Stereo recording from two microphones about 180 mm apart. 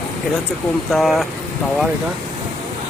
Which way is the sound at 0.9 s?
Centre (ahead or behind).